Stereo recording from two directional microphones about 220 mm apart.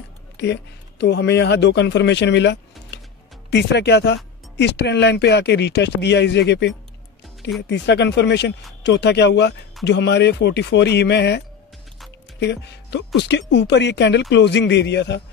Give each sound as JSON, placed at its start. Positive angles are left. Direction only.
{"t": 0.4, "sound": "speech", "side_deg": 50}